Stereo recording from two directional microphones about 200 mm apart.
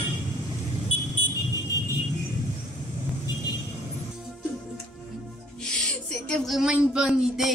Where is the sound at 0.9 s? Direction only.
80° left.